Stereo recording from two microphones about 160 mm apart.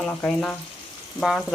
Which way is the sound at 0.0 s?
5° left (ahead or behind).